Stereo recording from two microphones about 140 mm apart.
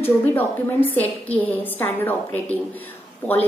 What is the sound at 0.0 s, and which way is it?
A woman's voice, 15° left (ahead or behind).